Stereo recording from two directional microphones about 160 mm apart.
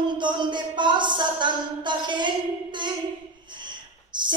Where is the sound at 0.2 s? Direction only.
30° right (ahead or behind).